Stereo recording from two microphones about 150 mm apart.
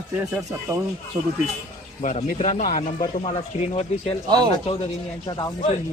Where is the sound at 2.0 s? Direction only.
50° left (ahead or behind).